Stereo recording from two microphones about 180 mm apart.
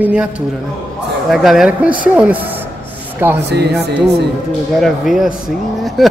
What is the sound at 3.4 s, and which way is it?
Speech, 70° right (ahead or behind).